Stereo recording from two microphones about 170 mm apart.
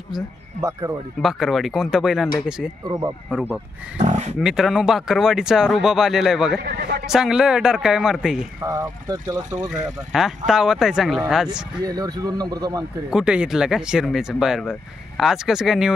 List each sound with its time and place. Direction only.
0.6 s speech: 15° right (ahead or behind)
1.2 s speech: centre (ahead or behind)
4.0 s speech: 45° right (ahead or behind)
4.4 s speech: 5° right (ahead or behind)
6.6 s a man's voice: 70° right (ahead or behind)
7.1 s speech: 5° right (ahead or behind)
8.6 s speech: 20° right (ahead or behind)
9.7 s speech: 5° right (ahead or behind)
11.8 s speech: 20° right (ahead or behind)
13.1 s speech: 5° right (ahead or behind)